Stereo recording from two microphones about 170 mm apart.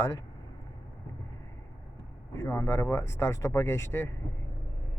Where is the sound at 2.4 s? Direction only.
15° left (ahead or behind).